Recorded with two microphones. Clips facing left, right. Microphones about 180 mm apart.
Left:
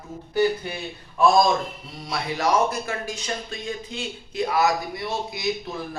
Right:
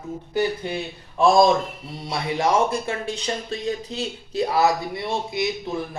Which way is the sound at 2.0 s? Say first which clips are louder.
Right 2 dB; 25° right (ahead or behind).